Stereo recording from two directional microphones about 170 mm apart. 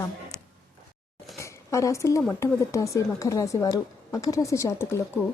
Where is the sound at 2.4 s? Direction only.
20° left (ahead or behind).